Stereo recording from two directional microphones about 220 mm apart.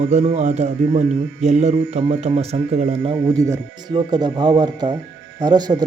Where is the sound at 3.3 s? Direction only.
15° right (ahead or behind).